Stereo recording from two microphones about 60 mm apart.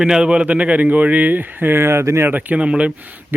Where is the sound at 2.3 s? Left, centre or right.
Right.